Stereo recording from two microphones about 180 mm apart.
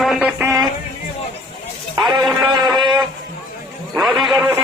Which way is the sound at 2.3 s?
25° right (ahead or behind).